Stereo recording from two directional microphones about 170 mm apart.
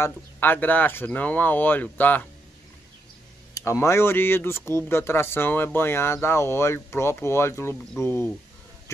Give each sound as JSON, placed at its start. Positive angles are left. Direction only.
{"t": 0.0, "sound": "speech", "side_deg": 10}
{"t": 3.5, "sound": "speech", "side_deg": 15}